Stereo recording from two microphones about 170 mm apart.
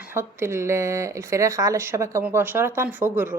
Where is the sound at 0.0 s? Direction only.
15° right (ahead or behind).